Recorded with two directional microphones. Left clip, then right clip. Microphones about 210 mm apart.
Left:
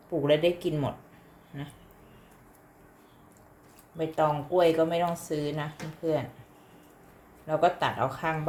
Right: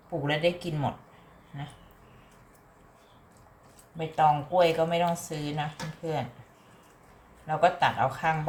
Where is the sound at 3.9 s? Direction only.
40° left (ahead or behind).